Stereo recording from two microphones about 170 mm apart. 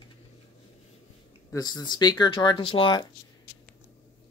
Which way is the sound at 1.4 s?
20° left (ahead or behind).